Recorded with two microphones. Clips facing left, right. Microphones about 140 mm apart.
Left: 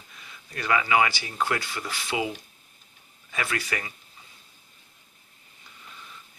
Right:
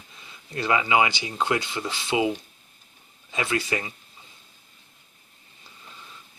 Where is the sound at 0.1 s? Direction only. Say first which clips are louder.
Right 5 dB; 25° right (ahead or behind).